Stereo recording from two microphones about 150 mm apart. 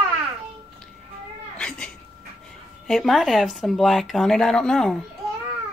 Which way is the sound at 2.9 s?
Centre (ahead or behind).